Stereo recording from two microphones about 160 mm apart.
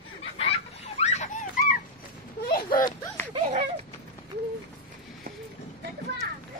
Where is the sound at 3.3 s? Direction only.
35° right (ahead or behind).